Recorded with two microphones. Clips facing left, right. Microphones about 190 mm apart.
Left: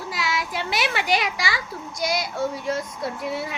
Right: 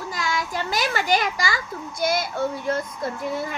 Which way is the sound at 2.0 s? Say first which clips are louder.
Right 2 dB; 55° right (ahead or behind).